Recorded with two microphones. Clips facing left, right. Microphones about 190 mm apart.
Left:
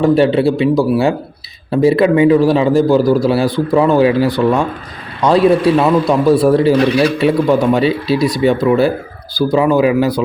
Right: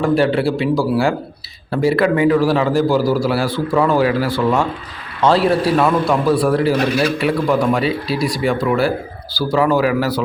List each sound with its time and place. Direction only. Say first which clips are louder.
0.0 s a man's voice: left 4 dB; 20° left (ahead or behind)